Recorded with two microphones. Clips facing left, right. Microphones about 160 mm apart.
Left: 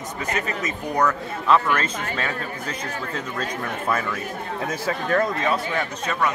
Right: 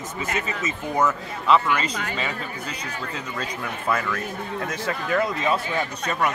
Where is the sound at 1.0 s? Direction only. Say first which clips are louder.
Left 1 dB; centre (ahead or behind).